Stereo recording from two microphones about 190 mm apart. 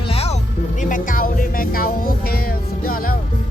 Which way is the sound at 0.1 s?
30° left (ahead or behind).